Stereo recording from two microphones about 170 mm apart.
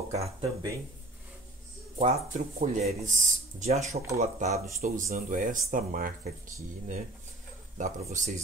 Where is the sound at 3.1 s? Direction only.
45° right (ahead or behind).